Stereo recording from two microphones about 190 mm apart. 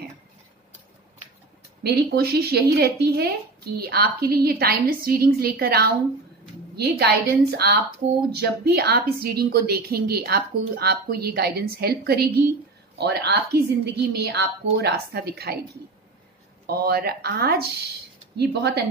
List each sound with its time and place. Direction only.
1.8 s a woman's voice: 55° right (ahead or behind)